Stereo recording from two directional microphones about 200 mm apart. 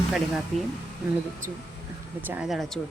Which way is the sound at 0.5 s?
Centre (ahead or behind).